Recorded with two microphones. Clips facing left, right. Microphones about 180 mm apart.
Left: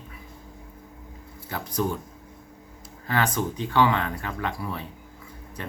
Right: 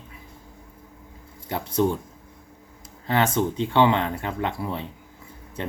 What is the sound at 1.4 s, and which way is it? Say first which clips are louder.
Speech: right 5 dB; 25° right (ahead or behind).